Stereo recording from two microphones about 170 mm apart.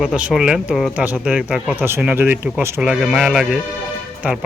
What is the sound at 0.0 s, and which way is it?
Speech, 5° right (ahead or behind).